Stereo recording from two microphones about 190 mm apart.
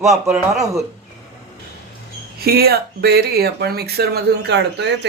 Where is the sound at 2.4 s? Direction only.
55° right (ahead or behind).